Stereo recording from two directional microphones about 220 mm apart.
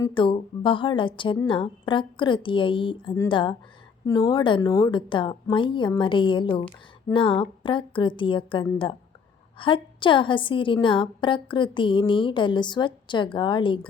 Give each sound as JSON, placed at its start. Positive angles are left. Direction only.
{"t": 0.0, "sound": "a woman's voice", "side_deg": 20}